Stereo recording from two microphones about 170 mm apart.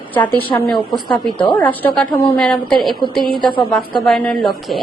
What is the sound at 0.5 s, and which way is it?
A woman's voice, 15° left (ahead or behind).